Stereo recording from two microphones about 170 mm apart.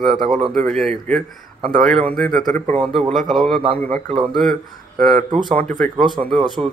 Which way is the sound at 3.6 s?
35° right (ahead or behind).